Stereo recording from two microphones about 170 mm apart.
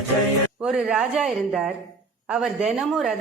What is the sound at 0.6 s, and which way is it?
A woman's voice, 5° right (ahead or behind).